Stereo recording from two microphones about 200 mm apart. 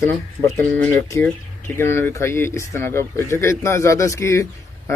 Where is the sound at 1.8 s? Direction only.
10° left (ahead or behind).